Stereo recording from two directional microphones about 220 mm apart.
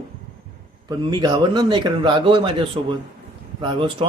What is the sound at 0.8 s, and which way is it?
A man's voice, 20° right (ahead or behind).